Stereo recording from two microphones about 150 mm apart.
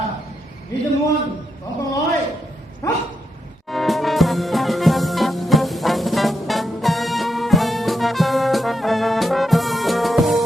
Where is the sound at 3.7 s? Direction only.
Centre (ahead or behind).